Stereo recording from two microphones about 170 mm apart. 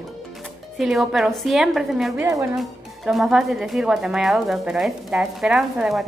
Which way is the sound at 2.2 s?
20° right (ahead or behind).